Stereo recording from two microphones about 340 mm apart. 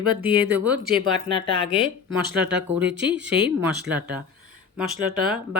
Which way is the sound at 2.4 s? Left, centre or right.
Centre.